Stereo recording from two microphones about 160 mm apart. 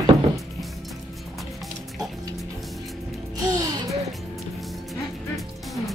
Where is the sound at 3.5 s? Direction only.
25° right (ahead or behind).